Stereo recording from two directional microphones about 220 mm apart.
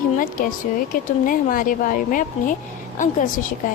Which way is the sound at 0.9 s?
40° left (ahead or behind).